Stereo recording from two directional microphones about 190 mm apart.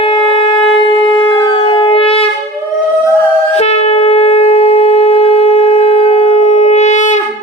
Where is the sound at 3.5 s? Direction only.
35° left (ahead or behind).